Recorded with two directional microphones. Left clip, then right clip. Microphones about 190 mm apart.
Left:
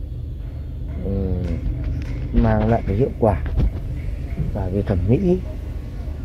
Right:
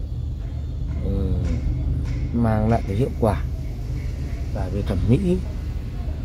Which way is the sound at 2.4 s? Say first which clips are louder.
Left 3 dB; 5° left (ahead or behind).